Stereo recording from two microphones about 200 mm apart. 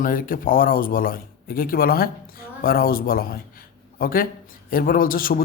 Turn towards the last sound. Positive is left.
turn(degrees=45)  # may be behind; listen again after turning